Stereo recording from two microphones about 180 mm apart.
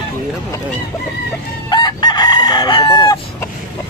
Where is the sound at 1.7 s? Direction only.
25° left (ahead or behind).